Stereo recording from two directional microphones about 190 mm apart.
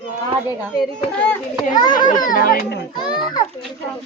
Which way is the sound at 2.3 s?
50° left (ahead or behind).